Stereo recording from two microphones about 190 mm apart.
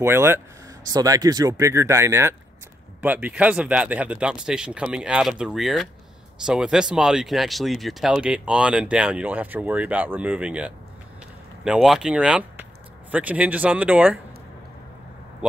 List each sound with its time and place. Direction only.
0.0 s speech: 10° right (ahead or behind)